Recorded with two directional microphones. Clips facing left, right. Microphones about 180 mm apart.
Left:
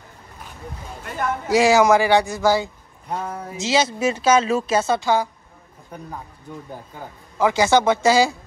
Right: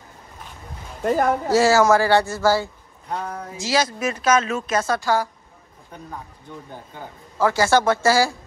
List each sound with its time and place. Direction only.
1.0 s speech: 40° right (ahead or behind)
1.5 s speech: 15° left (ahead or behind)
3.1 s a sound: 5° left (ahead or behind)
3.5 s speech: 25° left (ahead or behind)
5.9 s speech: 10° left (ahead or behind)
7.3 s speech: 15° left (ahead or behind)